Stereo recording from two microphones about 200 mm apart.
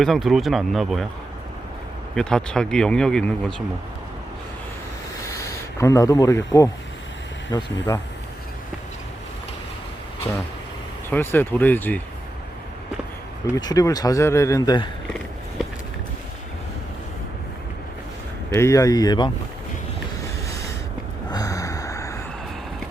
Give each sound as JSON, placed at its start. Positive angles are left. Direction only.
{"t": 0.0, "sound": "speech", "side_deg": 0}
{"t": 2.1, "sound": "speech", "side_deg": 5}
{"t": 5.8, "sound": "speech", "side_deg": 15}
{"t": 11.1, "sound": "speech", "side_deg": 10}
{"t": 13.6, "sound": "speech", "side_deg": 20}
{"t": 18.5, "sound": "speech", "side_deg": 15}
{"t": 21.2, "sound": "gasp", "side_deg": 20}